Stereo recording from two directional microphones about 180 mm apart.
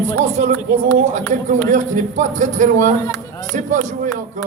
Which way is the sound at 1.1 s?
45° right (ahead or behind).